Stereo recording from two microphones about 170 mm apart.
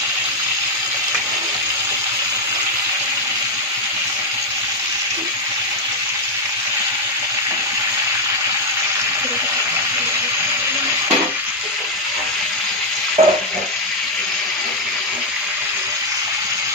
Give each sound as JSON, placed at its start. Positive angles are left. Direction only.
{"t": 13.2, "sound": "frying", "side_deg": -40}